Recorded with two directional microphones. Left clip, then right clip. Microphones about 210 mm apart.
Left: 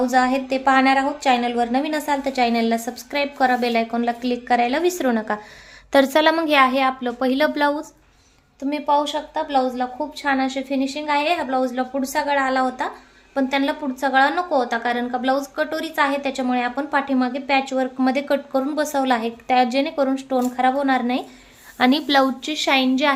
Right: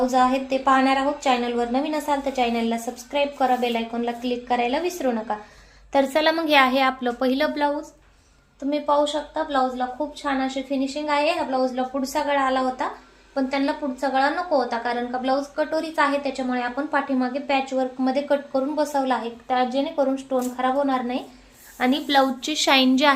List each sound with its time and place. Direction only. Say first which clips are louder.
0.0 s a woman's voice: left 1 dB; 40° left (ahead or behind)
5.9 s a woman's voice: left 4 dB; 30° left (ahead or behind)
8.7 s a woman's voice: left 1 dB; 50° left (ahead or behind); by 22.3 s 30° left (ahead or behind)
22.4 s a woman's voice: even; centre (ahead or behind)